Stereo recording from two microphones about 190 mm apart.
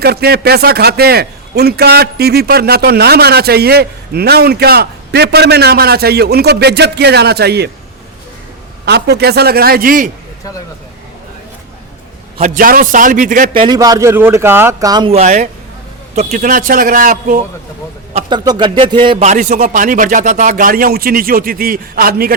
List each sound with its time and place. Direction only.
0.0 s a man's voice: 55° right (ahead or behind)
8.9 s a man's voice: 60° right (ahead or behind)
12.4 s speech: 50° right (ahead or behind)
13.5 s a man's voice: 25° right (ahead or behind)
15.1 s speech: 40° right (ahead or behind)
18.1 s speech: 30° right (ahead or behind)
19.3 s speech: 40° right (ahead or behind)